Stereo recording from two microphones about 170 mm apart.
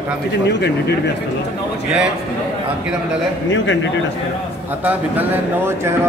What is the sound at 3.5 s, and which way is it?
Speech, 90° left.